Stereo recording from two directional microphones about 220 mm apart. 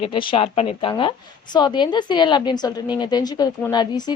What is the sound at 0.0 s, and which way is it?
A woman's voice, 25° left (ahead or behind).